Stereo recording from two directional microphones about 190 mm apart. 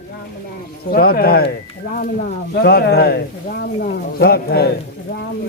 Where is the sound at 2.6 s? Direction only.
60° left (ahead or behind).